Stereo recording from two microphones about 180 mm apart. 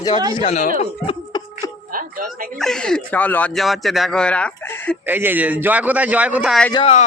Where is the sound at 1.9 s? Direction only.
50° right (ahead or behind).